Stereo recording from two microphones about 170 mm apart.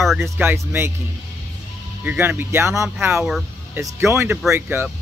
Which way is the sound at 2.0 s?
10° right (ahead or behind).